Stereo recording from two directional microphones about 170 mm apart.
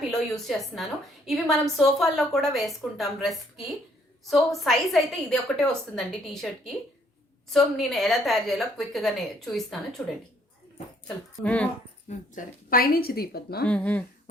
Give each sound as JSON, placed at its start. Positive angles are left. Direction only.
{"t": 0.1, "sound": "a woman's voice", "side_deg": 0}
{"t": 11.4, "sound": "speech", "side_deg": 5}
{"t": 12.0, "sound": "speech", "side_deg": 50}
{"t": 13.7, "sound": "speech", "side_deg": 10}